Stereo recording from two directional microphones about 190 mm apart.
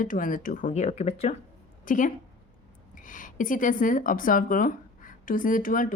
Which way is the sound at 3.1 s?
45° left (ahead or behind).